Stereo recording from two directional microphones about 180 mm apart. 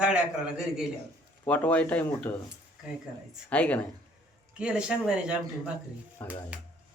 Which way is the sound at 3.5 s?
10° left (ahead or behind).